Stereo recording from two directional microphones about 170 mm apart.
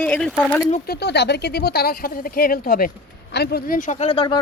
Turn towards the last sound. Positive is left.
turn(degrees=30)  # may be behind; listen again after turning